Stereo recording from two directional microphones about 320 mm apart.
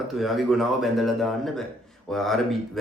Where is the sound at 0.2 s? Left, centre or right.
Centre.